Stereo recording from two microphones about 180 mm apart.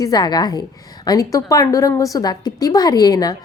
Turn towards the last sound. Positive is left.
turn(degrees=20)  # may be behind; listen again after turning